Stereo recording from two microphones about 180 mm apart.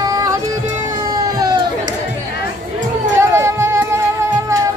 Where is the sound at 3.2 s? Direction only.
15° right (ahead or behind).